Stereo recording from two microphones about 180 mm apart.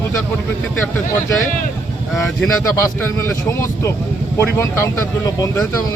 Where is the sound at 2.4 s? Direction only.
15° left (ahead or behind).